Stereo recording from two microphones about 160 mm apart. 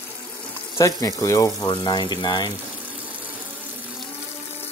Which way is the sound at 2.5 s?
10° right (ahead or behind).